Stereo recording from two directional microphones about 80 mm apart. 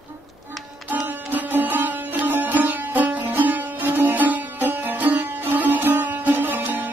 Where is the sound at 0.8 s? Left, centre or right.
Right.